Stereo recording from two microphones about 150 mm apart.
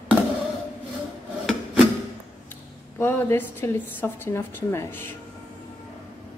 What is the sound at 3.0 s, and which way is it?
A woman's voice, 15° left (ahead or behind).